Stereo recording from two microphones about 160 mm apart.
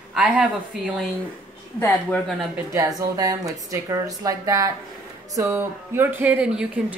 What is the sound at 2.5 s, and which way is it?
A woman's voice, 20° right (ahead or behind).